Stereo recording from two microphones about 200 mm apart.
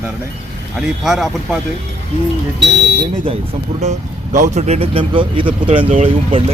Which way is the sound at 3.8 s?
35° right (ahead or behind).